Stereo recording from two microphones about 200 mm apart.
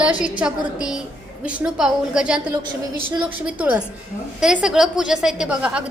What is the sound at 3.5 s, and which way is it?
A woman's voice, 5° right (ahead or behind).